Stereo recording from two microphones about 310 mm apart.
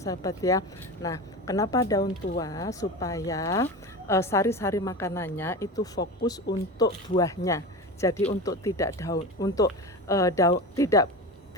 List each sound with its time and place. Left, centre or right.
0.0 s speech: centre